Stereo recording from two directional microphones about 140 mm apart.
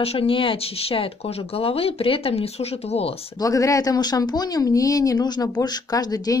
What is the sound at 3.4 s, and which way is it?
Speech, 25° left (ahead or behind).